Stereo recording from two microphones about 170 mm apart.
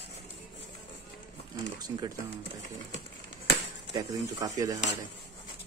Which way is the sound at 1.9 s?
20° right (ahead or behind).